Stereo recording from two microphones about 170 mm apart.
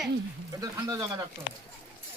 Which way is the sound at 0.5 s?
20° right (ahead or behind).